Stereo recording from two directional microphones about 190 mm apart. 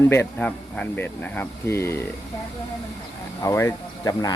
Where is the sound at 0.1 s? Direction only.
10° left (ahead or behind).